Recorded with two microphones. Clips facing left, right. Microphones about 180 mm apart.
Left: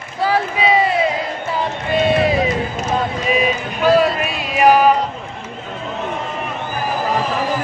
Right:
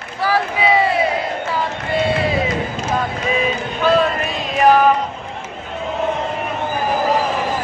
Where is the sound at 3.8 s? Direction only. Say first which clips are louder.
Left 2 dB; 10° left (ahead or behind).